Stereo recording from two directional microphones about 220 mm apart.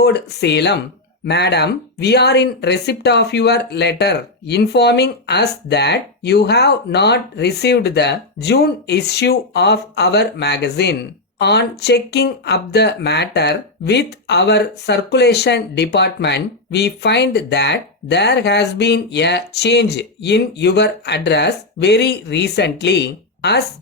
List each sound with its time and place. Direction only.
0.0 s speech: 50° left (ahead or behind)